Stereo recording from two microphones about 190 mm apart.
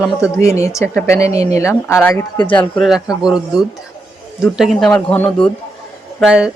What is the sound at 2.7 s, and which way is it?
A woman's voice, centre (ahead or behind).